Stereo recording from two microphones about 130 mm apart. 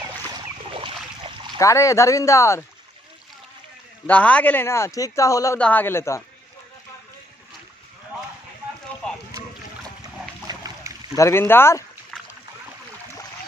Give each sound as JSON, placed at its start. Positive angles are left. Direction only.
{"t": 1.6, "sound": "speech", "side_deg": 25}
{"t": 4.1, "sound": "speech", "side_deg": 10}
{"t": 5.6, "sound": "speech", "side_deg": 15}
{"t": 10.4, "sound": "a sound", "side_deg": -30}
{"t": 11.1, "sound": "speech", "side_deg": 20}